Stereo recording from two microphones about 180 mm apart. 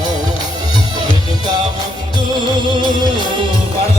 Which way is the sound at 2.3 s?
25° right (ahead or behind).